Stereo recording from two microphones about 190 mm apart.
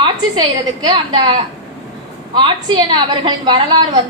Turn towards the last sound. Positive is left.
turn(degrees=-25)  # may be behind; listen again after turning